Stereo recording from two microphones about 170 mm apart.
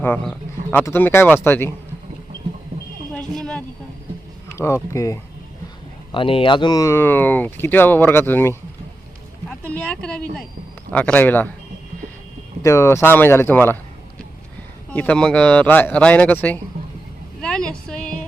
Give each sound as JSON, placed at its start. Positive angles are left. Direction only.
{"t": 0.0, "sound": "speech", "side_deg": 10}
{"t": 3.2, "sound": "a sound", "side_deg": 5}
{"t": 4.5, "sound": "speech", "side_deg": 15}
{"t": 6.1, "sound": "speech", "side_deg": 30}
{"t": 12.6, "sound": "speech", "side_deg": 15}
{"t": 14.8, "sound": "speech", "side_deg": 10}
{"t": 17.4, "sound": "a sound", "side_deg": 5}